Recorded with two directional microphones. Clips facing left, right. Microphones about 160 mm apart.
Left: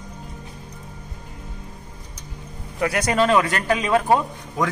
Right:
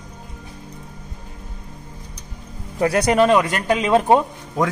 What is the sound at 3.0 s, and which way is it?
A man's voice, 15° right (ahead or behind).